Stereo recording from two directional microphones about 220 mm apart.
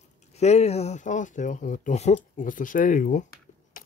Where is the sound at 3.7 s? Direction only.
40° left (ahead or behind).